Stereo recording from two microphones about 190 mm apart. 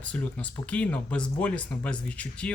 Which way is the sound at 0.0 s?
5° left (ahead or behind).